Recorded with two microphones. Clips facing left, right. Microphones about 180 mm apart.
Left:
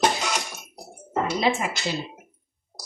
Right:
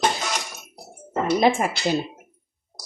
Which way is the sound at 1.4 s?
50° right (ahead or behind).